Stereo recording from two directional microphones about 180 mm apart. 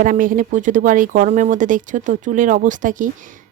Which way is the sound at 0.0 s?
50° right (ahead or behind).